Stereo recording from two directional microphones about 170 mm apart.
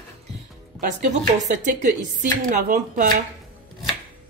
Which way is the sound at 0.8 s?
45° right (ahead or behind).